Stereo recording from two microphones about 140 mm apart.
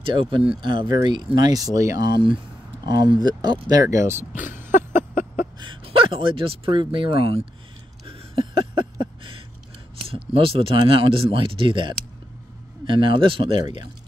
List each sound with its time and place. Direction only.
0.0 s speech: 40° right (ahead or behind); by 4.3 s 20° right (ahead or behind)
5.6 s speech: 35° right (ahead or behind)
8.1 s a sound: 40° right (ahead or behind)
9.9 s speech: 40° right (ahead or behind)